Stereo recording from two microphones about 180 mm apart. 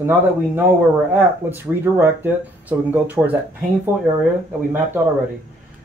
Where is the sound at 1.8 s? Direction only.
10° right (ahead or behind).